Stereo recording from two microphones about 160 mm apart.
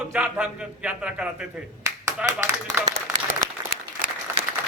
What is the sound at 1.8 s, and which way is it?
Clapping, 15° right (ahead or behind).